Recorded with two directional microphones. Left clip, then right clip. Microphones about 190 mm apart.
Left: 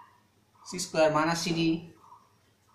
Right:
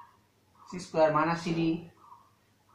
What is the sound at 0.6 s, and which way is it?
Speech, 20° left (ahead or behind).